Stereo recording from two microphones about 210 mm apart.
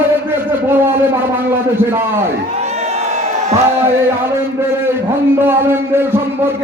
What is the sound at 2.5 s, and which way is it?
Crowd, 30° right (ahead or behind).